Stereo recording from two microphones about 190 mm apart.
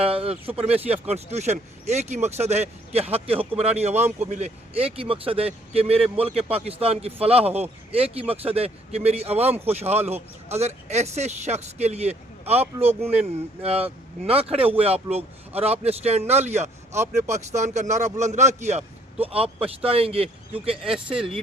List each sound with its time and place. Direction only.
0.0 s speech: 30° right (ahead or behind)